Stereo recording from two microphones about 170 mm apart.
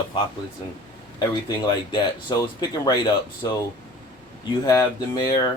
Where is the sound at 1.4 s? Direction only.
25° left (ahead or behind).